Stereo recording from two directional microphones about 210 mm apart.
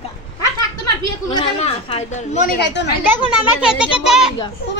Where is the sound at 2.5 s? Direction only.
55° left (ahead or behind).